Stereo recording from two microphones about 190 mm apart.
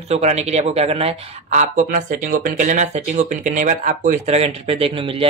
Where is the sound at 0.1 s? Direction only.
35° right (ahead or behind).